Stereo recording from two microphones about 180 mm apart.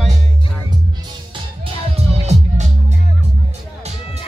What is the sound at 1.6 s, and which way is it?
Music, 35° right (ahead or behind).